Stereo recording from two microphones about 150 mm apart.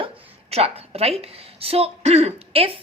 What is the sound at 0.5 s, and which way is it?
A woman's voice, 40° right (ahead or behind).